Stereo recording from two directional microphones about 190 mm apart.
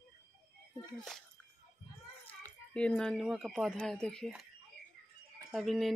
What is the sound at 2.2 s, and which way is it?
Speech, 5° left (ahead or behind).